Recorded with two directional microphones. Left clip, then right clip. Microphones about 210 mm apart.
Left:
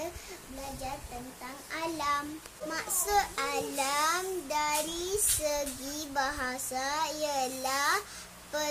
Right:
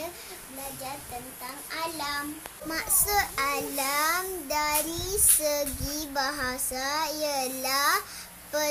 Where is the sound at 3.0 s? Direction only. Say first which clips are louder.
Right 2 dB; 5° left (ahead or behind).